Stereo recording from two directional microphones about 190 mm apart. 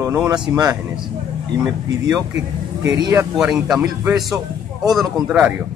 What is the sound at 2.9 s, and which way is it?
A man's voice, 15° right (ahead or behind).